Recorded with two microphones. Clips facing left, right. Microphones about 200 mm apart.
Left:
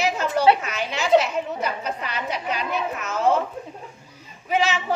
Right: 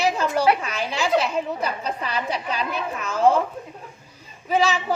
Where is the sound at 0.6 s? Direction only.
30° right (ahead or behind).